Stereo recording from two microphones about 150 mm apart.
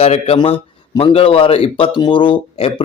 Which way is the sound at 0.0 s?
40° left (ahead or behind).